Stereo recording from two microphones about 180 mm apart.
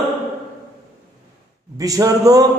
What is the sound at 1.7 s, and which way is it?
Speech, 20° right (ahead or behind).